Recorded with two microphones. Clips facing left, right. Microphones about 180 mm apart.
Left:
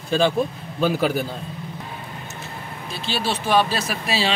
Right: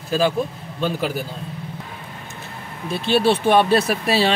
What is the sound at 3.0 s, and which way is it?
Speech, 60° right (ahead or behind).